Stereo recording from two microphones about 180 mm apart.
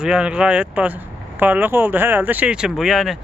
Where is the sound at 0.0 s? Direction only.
5° right (ahead or behind).